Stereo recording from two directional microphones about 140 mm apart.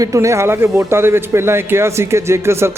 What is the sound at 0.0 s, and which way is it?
A man's voice, 20° right (ahead or behind).